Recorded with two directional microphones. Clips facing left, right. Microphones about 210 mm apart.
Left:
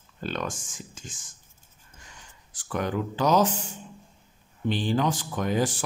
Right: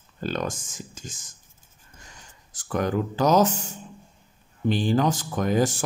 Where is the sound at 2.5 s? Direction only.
45° right (ahead or behind).